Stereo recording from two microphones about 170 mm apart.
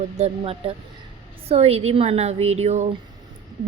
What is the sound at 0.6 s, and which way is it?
A woman's voice, 35° right (ahead or behind).